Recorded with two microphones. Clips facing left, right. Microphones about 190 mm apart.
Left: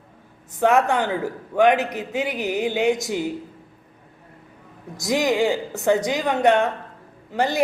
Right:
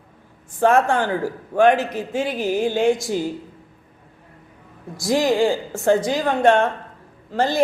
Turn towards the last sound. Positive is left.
turn(degrees=15)  # may be behind; listen again after turning